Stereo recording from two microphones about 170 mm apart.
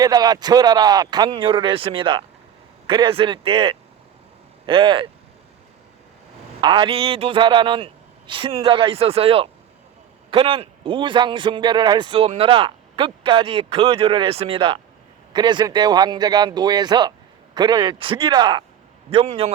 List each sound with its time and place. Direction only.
0.0 s a man's voice: 25° right (ahead or behind)
6.6 s a man's voice: 30° right (ahead or behind)